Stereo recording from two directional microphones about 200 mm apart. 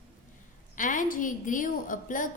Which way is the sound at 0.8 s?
40° left (ahead or behind).